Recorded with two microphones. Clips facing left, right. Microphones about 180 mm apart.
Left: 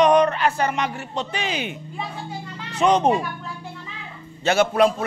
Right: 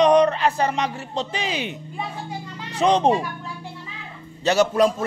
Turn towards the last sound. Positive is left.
turn(degrees=-40)  # may be behind; listen again after turning